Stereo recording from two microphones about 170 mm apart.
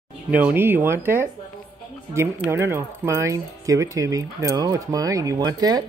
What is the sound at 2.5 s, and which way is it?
Speech, 15° right (ahead or behind).